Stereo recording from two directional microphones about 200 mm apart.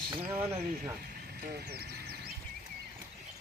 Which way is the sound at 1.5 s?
50° right (ahead or behind).